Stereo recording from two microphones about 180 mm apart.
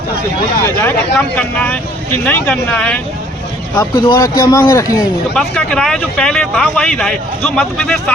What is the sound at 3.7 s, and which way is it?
Speech, 20° left (ahead or behind).